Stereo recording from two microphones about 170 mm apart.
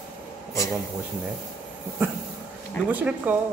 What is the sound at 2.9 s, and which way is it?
Speech, 10° right (ahead or behind).